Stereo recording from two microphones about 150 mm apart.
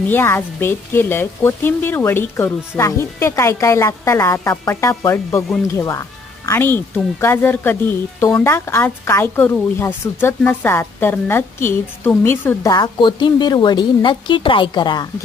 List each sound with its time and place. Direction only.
0.1 s speech: 15° left (ahead or behind)
12.7 s a woman's voice: 30° left (ahead or behind)